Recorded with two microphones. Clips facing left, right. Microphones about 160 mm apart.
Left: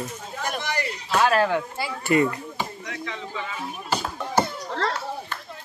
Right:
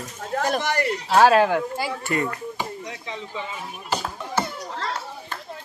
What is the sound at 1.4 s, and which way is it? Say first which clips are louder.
Speech: right 2 dB; 10° right (ahead or behind).